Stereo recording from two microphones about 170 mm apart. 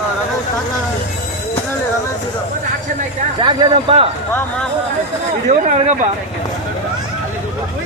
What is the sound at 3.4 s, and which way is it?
Speech, 30° right (ahead or behind).